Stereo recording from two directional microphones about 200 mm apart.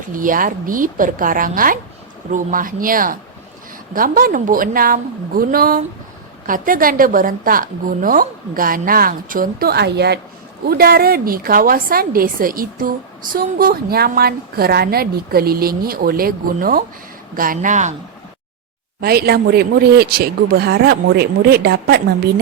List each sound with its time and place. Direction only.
0.1 s a woman's voice: 45° right (ahead or behind)
19.0 s a woman's voice: 50° right (ahead or behind)